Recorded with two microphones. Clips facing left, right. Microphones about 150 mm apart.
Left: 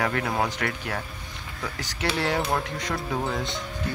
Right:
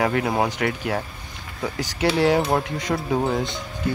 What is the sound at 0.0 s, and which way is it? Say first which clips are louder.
Speech: right 5 dB; 15° right (ahead or behind).